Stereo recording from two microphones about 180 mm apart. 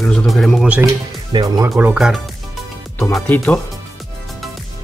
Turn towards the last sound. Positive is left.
turn(degrees=10)  # may be behind; listen again after turning